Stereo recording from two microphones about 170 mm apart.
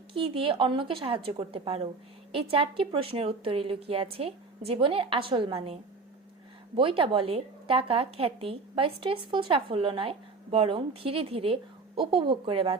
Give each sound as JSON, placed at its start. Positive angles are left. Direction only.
{"t": 0.1, "sound": "a woman's voice", "side_deg": -30}